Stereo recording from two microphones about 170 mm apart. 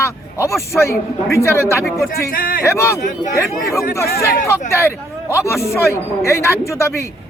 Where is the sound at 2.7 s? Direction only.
15° left (ahead or behind).